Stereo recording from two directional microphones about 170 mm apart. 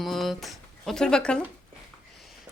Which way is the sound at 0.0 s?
Centre (ahead or behind).